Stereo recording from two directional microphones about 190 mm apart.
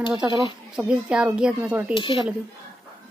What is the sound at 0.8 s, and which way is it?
A woman's voice, 5° right (ahead or behind).